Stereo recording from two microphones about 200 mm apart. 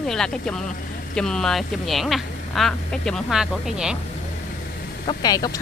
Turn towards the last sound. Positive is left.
turn(degrees=20)  # may be behind; listen again after turning